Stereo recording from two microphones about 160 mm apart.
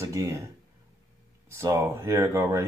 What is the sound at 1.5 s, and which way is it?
Speech, 15° right (ahead or behind).